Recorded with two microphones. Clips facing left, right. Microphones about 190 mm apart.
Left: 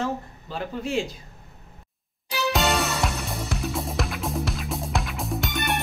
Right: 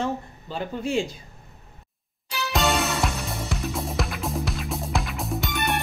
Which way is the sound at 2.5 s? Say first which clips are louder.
Right 2 dB; centre (ahead or behind).